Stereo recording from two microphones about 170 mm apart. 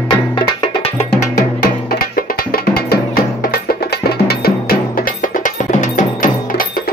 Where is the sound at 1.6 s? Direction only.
60° left (ahead or behind).